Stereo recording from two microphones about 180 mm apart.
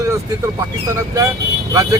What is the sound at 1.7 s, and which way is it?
Speech, 20° right (ahead or behind).